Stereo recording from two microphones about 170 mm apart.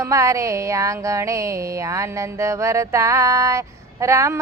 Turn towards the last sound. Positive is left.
turn(degrees=-15)  # may be behind; listen again after turning